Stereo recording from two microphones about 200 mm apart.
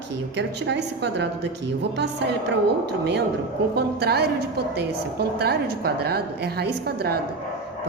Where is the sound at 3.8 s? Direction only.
55° right (ahead or behind).